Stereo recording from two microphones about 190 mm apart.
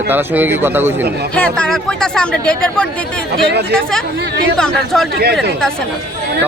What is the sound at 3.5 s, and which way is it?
Speech, 60° right (ahead or behind).